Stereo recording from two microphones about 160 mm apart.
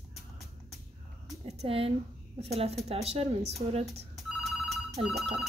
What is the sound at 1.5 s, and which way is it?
A woman's voice, 40° right (ahead or behind).